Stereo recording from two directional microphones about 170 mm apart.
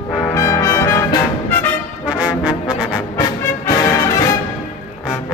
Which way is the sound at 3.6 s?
20° left (ahead or behind).